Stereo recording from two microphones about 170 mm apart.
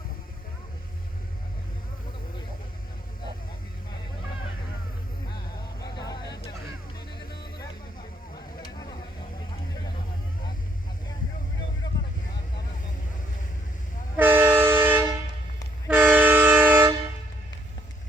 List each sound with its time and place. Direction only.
5.8 s vehicle: 20° left (ahead or behind)
8.6 s a sound: 25° left (ahead or behind)
14.2 s train: 10° right (ahead or behind)